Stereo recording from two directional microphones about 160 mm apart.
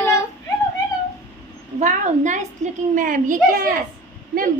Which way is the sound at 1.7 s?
50° right (ahead or behind).